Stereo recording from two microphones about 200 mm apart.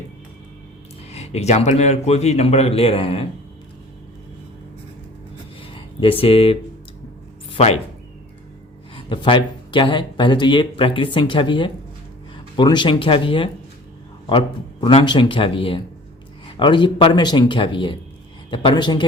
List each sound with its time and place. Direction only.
1.1 s a man's voice: 30° left (ahead or behind)
5.5 s a sound: 25° left (ahead or behind)
7.5 s speech: 30° left (ahead or behind)
9.0 s speech: 25° left (ahead or behind)